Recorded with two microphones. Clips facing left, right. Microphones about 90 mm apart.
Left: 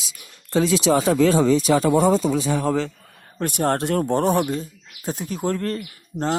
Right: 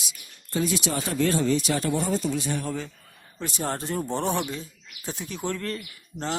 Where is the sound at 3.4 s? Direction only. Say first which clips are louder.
Left 9 dB; 55° left (ahead or behind).